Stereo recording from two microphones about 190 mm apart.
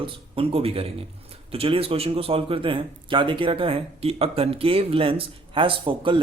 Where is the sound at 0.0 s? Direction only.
30° right (ahead or behind).